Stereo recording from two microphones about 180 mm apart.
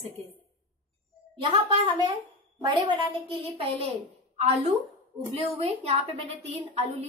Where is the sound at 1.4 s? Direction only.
30° right (ahead or behind).